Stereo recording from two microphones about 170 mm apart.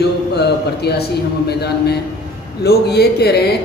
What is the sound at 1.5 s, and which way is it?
Speech, 70° left (ahead or behind).